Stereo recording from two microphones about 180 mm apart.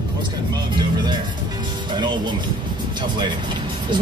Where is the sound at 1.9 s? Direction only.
25° right (ahead or behind).